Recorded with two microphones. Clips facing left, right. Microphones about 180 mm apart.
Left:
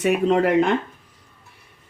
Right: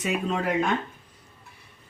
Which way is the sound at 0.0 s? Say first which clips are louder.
Left 9 dB; 65° left (ahead or behind).